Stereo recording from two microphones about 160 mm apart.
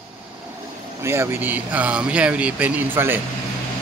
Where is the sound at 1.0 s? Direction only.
15° right (ahead or behind).